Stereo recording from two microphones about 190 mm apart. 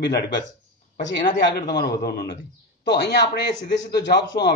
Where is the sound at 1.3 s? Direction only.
55° left (ahead or behind).